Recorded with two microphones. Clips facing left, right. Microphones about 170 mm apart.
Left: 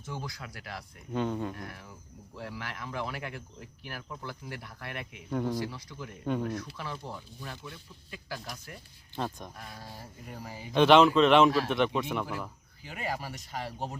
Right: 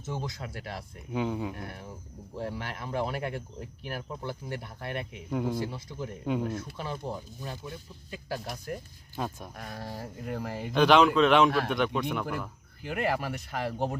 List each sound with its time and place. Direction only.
0.0 s speech: 20° right (ahead or behind)
1.1 s speech: 5° right (ahead or behind)
1.5 s speech: 30° right (ahead or behind)
5.3 s speech: 5° right (ahead or behind)
5.5 s speech: 25° right (ahead or behind)
6.9 s speech: 45° right (ahead or behind)
9.1 s speech: 5° right (ahead or behind)
9.6 s speech: 55° right (ahead or behind)
10.7 s a man's voice: centre (ahead or behind)
12.8 s speech: 60° right (ahead or behind)